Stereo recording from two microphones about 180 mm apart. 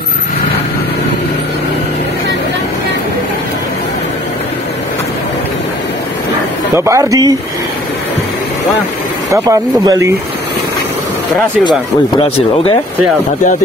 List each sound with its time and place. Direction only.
6.8 s speech: 20° right (ahead or behind)
9.3 s speech: 15° right (ahead or behind)
12.2 s speech: 30° left (ahead or behind)